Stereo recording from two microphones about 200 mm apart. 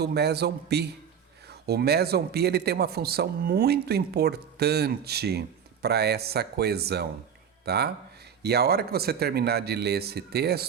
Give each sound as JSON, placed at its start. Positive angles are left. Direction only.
{"t": 0.0, "sound": "a man's voice", "side_deg": -55}